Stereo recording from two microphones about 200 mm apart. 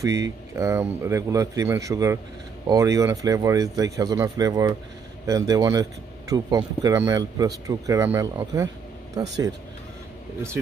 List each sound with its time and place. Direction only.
0.0 s speech: 15° right (ahead or behind)